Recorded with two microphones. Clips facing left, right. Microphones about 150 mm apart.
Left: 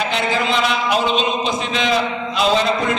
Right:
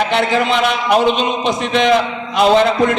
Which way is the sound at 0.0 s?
60° right (ahead or behind).